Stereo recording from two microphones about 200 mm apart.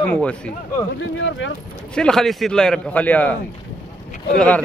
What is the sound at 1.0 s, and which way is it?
Speech, 70° left (ahead or behind).